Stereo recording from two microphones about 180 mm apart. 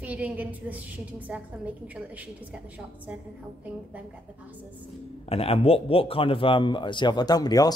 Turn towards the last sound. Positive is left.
turn(degrees=20)  # may be behind; listen again after turning